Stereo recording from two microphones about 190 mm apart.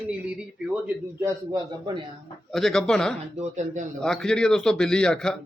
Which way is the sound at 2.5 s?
Centre (ahead or behind).